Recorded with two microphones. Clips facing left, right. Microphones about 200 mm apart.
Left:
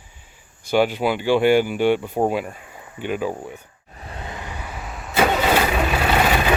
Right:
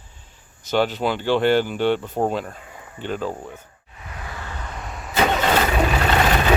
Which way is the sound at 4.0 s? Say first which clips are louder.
Left 2 dB; 30° left (ahead or behind).